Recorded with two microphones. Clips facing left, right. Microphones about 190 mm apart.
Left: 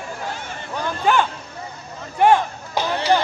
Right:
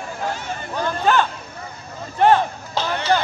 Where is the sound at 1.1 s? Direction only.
15° left (ahead or behind).